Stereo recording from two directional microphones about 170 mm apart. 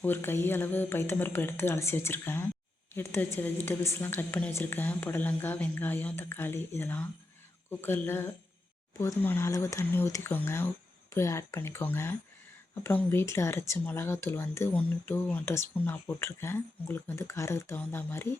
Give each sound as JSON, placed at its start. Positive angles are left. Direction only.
{"t": 0.0, "sound": "speech", "side_deg": 15}